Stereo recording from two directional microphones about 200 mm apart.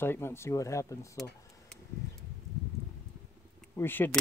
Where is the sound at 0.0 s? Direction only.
10° left (ahead or behind).